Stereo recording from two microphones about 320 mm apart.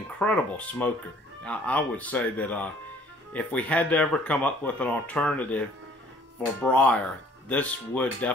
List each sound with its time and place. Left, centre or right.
0.2 s speech: centre
6.6 s speech: centre